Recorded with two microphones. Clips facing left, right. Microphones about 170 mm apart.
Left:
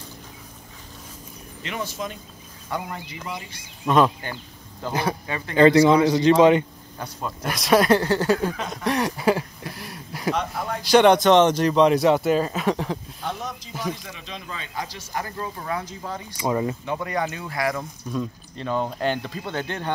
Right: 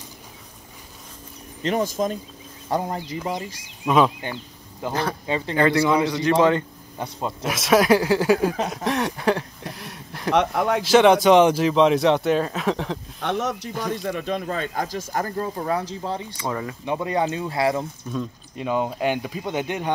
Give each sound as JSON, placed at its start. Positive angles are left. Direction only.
{"t": 1.6, "sound": "speech", "side_deg": -40}
{"t": 3.8, "sound": "speech", "side_deg": -5}
{"t": 5.6, "sound": "speech", "side_deg": 20}
{"t": 7.0, "sound": "speech", "side_deg": -25}
{"t": 7.4, "sound": "speech", "side_deg": 0}
{"t": 8.6, "sound": "a sound", "side_deg": 0}
{"t": 10.3, "sound": "speech", "side_deg": -65}
{"t": 10.8, "sound": "speech", "side_deg": 0}
{"t": 13.2, "sound": "speech", "side_deg": -75}
{"t": 16.3, "sound": "speech", "side_deg": 20}
{"t": 16.8, "sound": "speech", "side_deg": -20}
{"t": 18.6, "sound": "speech", "side_deg": -10}